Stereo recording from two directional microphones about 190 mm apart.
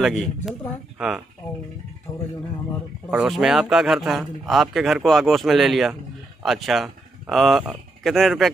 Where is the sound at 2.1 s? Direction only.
20° left (ahead or behind).